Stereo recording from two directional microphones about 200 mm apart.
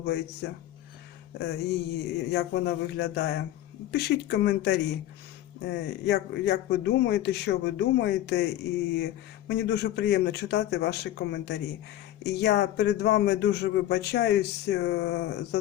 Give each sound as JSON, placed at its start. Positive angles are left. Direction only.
{"t": 0.4, "sound": "speech", "side_deg": 55}
{"t": 1.4, "sound": "a sound", "side_deg": 55}
{"t": 2.3, "sound": "speech", "side_deg": 55}